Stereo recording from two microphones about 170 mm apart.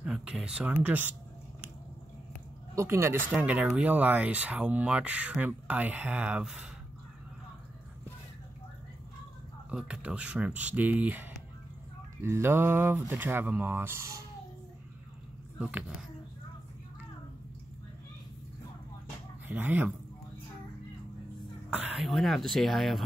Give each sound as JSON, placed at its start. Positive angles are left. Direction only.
{"t": 0.0, "sound": "speech", "side_deg": -5}
{"t": 2.7, "sound": "speech", "side_deg": -15}
{"t": 9.7, "sound": "speech", "side_deg": -5}
{"t": 19.4, "sound": "speech", "side_deg": -10}
{"t": 21.6, "sound": "speech", "side_deg": -5}